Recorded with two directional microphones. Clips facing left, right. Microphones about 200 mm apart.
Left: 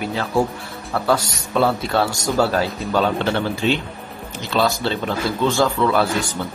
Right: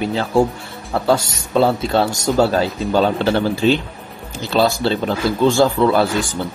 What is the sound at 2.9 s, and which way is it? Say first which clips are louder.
A man's voice: right 3 dB; 35° right (ahead or behind).